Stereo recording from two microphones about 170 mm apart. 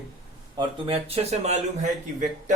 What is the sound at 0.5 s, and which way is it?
A man's voice, 35° right (ahead or behind).